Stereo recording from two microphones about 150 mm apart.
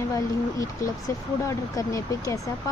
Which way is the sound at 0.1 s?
25° left (ahead or behind).